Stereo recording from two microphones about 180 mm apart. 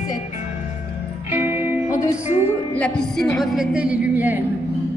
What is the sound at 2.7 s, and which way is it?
A man's voice, 5° left (ahead or behind).